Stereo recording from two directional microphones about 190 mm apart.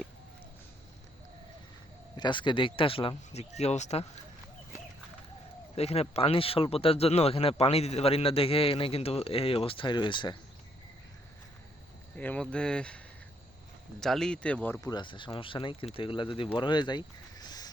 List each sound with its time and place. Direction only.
2.1 s speech: 25° left (ahead or behind)
5.7 s speech: 35° left (ahead or behind)
12.1 s speech: 10° left (ahead or behind)
14.0 s speech: 5° left (ahead or behind)
14.8 s speech: 20° left (ahead or behind)